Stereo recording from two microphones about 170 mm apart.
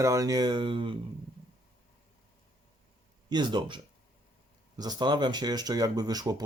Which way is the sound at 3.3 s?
25° right (ahead or behind).